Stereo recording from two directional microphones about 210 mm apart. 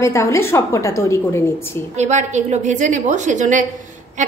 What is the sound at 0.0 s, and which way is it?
A woman's voice, 15° left (ahead or behind).